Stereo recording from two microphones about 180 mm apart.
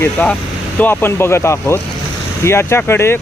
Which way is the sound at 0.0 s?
10° left (ahead or behind).